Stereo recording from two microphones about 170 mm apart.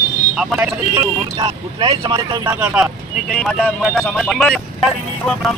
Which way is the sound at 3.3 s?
5° left (ahead or behind).